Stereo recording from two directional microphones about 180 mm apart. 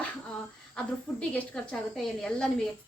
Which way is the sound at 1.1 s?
Centre (ahead or behind).